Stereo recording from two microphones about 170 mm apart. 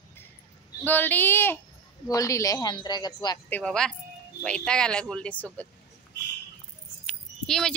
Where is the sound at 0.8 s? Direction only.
10° left (ahead or behind).